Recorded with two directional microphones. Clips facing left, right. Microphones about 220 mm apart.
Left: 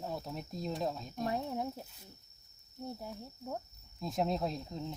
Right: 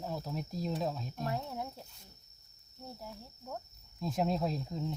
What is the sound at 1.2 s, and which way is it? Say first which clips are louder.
Speech: left 3 dB; 20° left (ahead or behind).